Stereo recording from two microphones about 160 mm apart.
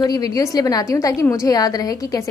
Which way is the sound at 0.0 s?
25° left (ahead or behind).